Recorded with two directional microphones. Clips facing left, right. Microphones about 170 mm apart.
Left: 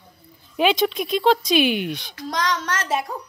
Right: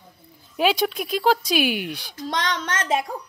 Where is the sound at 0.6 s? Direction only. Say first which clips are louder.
Left 2 dB; 5° right (ahead or behind).